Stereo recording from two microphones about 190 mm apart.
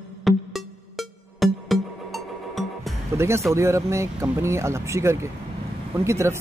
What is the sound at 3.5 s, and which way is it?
Speech, 15° right (ahead or behind).